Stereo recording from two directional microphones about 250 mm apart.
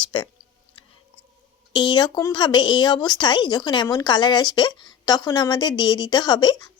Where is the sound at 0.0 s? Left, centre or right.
Centre.